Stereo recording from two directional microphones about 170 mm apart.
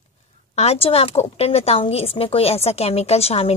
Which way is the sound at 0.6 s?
35° left (ahead or behind).